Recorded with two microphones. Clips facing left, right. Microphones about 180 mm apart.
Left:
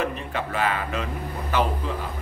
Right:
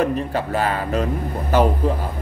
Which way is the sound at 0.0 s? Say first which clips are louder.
Right 7 dB; 40° right (ahead or behind).